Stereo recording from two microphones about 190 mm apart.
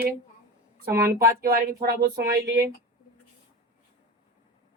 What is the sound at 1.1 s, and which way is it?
Speech, 50° right (ahead or behind).